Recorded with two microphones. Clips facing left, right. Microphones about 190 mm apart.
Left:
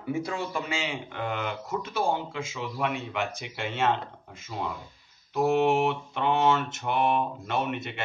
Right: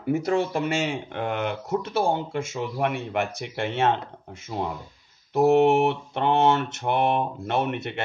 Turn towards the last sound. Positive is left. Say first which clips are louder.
# right 4 dB
turn(degrees=-55)  # may be behind; listen again after turning